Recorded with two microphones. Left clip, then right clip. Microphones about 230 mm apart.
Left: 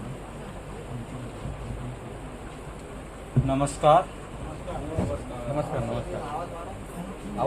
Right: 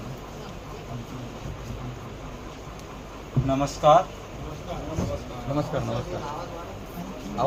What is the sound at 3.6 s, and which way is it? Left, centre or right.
Speech, left.